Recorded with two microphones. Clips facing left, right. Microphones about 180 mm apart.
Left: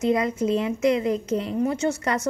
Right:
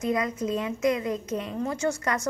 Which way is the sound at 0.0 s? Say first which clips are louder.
Left 5 dB; 25° left (ahead or behind).